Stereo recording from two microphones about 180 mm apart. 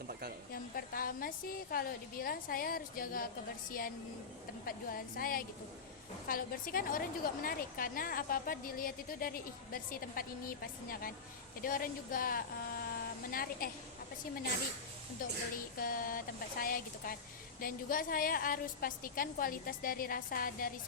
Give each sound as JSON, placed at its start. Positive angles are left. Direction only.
{"t": 0.1, "sound": "a sound", "side_deg": -60}
{"t": 0.5, "sound": "a woman's voice", "side_deg": 55}
{"t": 15.8, "sound": "a woman's voice", "side_deg": 50}